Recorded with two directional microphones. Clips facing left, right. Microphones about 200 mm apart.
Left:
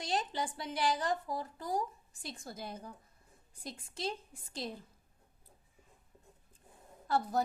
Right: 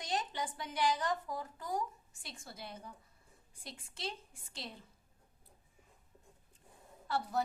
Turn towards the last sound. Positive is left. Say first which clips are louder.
# left 4 dB
turn(degrees=40)  # may be behind; listen again after turning